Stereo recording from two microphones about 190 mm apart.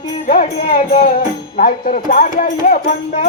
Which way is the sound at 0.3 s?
45° left (ahead or behind).